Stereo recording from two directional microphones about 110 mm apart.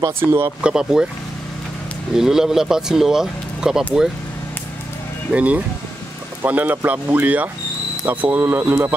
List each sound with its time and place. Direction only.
0.2 s speech: 20° right (ahead or behind)
0.6 s speech: 10° right (ahead or behind)
2.1 s speech: 5° right (ahead or behind)
5.3 s speech: 10° right (ahead or behind)